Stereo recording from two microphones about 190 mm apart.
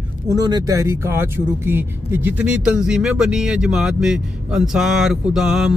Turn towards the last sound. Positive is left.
turn(degrees=0)  # may be behind; listen again after turning